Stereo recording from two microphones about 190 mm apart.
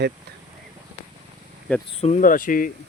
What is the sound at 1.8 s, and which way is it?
Speech, 35° left (ahead or behind).